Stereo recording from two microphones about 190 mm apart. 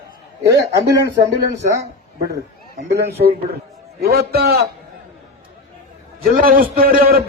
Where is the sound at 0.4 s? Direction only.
60° right (ahead or behind).